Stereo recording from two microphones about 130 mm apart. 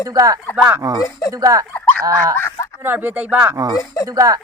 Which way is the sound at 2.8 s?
15° right (ahead or behind).